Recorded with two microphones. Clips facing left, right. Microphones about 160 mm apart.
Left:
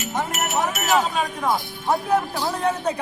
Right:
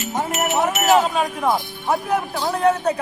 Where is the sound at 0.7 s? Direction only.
30° right (ahead or behind).